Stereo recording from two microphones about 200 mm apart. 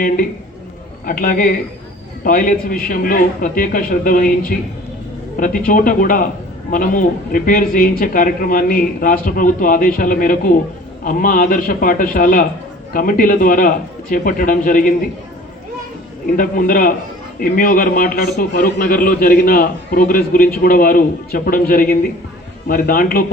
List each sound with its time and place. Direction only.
1.0 s a man's voice: 45° left (ahead or behind)
16.2 s a man's voice: 45° left (ahead or behind)